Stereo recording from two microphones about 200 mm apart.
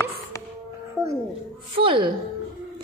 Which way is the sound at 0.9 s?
15° right (ahead or behind).